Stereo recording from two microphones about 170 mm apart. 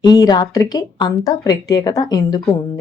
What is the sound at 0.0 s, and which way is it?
Speech, 25° left (ahead or behind).